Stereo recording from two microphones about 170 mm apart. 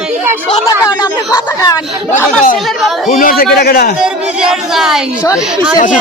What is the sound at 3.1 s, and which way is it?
Speech, 55° left (ahead or behind).